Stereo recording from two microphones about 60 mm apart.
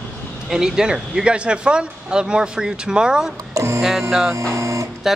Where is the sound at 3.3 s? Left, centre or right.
Right.